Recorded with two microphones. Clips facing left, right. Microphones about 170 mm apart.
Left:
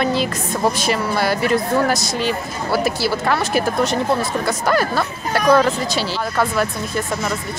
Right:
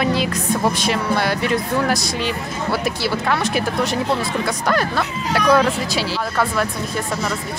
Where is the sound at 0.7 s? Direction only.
5° left (ahead or behind).